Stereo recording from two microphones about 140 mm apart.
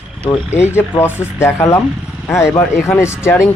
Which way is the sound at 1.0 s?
20° left (ahead or behind).